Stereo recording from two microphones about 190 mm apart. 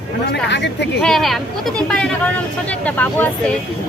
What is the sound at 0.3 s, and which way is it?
Speech, 65° left (ahead or behind).